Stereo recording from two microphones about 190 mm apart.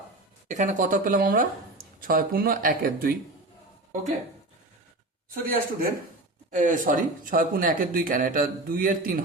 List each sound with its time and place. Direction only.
0.4 s speech: 40° right (ahead or behind)
5.3 s speech: 50° right (ahead or behind)